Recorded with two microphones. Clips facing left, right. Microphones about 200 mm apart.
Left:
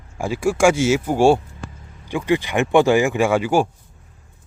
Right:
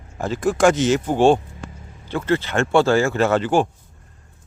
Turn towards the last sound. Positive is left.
turn(degrees=10)  # may be behind; listen again after turning